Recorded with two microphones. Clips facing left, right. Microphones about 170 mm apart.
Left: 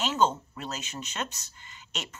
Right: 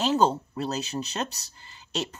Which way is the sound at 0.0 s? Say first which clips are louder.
Right 3 dB; 35° right (ahead or behind).